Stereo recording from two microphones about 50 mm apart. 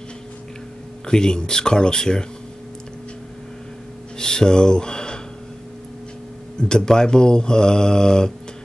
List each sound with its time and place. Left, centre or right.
1.0 s mantra: centre
4.2 s speech: centre
6.7 s mantra: centre